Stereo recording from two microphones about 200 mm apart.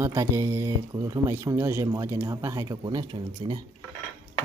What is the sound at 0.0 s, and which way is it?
Speech, 15° right (ahead or behind).